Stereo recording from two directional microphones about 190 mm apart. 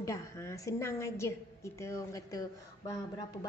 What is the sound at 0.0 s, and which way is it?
A woman's voice, 15° left (ahead or behind).